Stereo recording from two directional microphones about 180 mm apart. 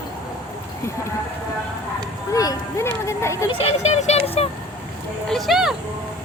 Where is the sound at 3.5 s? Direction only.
35° left (ahead or behind).